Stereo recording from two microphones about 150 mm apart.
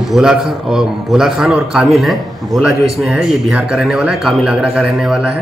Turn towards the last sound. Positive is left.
turn(degrees=-5)  # may be behind; listen again after turning